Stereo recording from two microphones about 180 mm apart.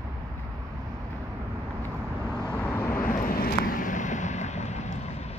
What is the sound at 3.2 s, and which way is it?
Vehicle, 55° left (ahead or behind).